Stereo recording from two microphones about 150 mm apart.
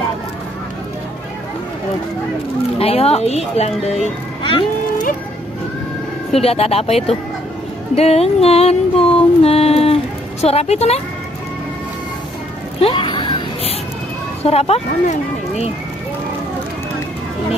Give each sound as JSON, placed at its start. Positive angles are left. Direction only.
{"t": 2.8, "sound": "speech", "side_deg": 40}
{"t": 6.4, "sound": "music", "side_deg": 40}
{"t": 10.4, "sound": "speech", "side_deg": 45}
{"t": 12.8, "sound": "a sound", "side_deg": 30}
{"t": 14.4, "sound": "speech", "side_deg": 45}